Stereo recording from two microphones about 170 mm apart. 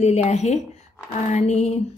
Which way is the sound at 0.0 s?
40° left (ahead or behind).